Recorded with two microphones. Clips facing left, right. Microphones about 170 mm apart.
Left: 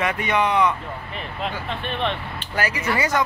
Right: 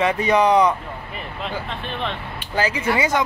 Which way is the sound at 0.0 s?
30° right (ahead or behind).